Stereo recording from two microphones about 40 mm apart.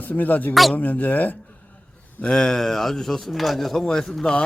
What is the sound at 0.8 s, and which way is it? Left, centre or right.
Speech, left.